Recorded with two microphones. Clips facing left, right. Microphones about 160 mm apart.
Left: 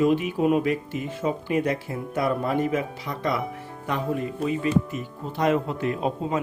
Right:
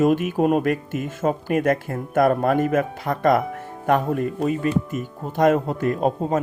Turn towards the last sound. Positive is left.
turn(degrees=-45)  # may be behind; listen again after turning